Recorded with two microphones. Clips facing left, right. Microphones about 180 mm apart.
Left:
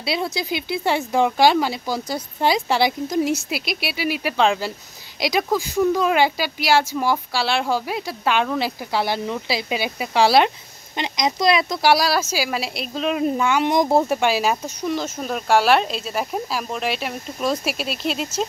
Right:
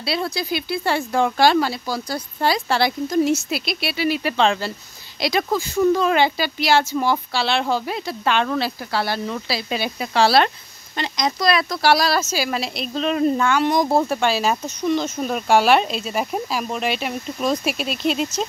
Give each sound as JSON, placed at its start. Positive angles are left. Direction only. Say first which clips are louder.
{"t": 0.0, "sound": "speech", "louder": "even", "side_deg": 15}